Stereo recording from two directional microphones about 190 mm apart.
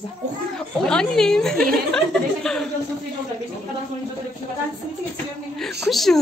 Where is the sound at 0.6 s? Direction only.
5° left (ahead or behind).